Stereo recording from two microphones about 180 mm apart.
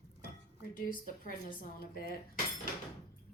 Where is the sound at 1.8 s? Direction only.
55° left (ahead or behind).